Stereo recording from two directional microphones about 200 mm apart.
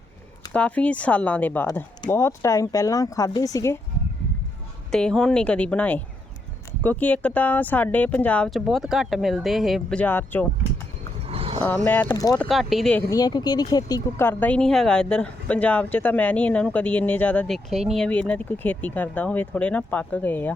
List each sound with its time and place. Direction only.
0.5 s speech: 5° left (ahead or behind)
4.9 s speech: 5° left (ahead or behind)
11.3 s a sound: 30° right (ahead or behind)
12.0 s speech: 20° left (ahead or behind)
12.4 s speech: centre (ahead or behind)
13.1 s speech: 20° left (ahead or behind)